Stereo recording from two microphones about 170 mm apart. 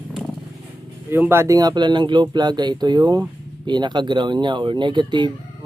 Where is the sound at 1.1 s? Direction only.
15° right (ahead or behind).